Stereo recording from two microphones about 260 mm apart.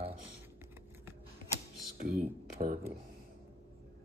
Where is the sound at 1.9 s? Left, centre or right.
Right.